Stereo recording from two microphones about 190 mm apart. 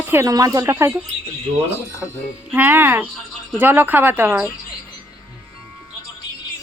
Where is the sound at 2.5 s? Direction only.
10° right (ahead or behind).